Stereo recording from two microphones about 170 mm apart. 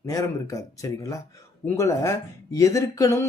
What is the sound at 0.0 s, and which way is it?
Speech, 20° left (ahead or behind).